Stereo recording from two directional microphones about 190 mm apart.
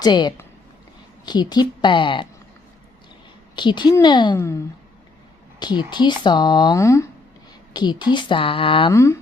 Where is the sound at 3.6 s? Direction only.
25° left (ahead or behind).